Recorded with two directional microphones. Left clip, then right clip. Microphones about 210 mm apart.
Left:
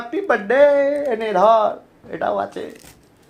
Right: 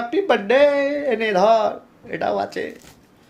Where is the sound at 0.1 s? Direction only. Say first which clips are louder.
Even; 15° right (ahead or behind).